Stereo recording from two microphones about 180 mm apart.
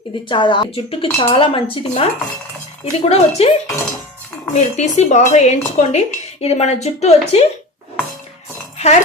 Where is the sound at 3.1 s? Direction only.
35° left (ahead or behind).